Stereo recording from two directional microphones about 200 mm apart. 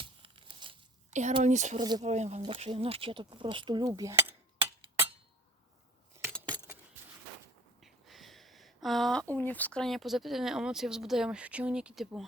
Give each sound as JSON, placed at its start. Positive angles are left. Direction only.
{"t": 0.0, "sound": "tearing", "side_deg": -25}
{"t": 1.3, "sound": "speech", "side_deg": -35}
{"t": 7.8, "sound": "speech", "side_deg": 0}